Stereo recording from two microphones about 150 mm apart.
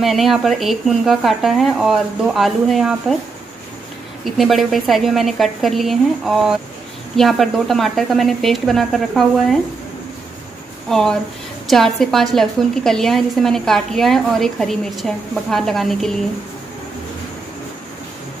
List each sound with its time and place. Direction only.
0.0 s a woman's voice: centre (ahead or behind)
4.2 s a woman's voice: centre (ahead or behind)
10.9 s a woman's voice: 5° left (ahead or behind)